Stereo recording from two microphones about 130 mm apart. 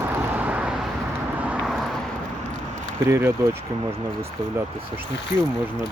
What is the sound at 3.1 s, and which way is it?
Speech, 20° right (ahead or behind).